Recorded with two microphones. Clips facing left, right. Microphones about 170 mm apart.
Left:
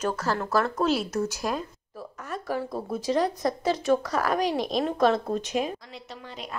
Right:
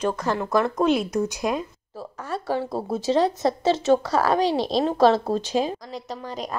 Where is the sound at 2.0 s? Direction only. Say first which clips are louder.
Right 5 dB; 30° right (ahead or behind).